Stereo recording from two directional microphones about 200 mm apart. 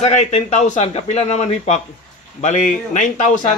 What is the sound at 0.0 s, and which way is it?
A man's voice, 35° left (ahead or behind).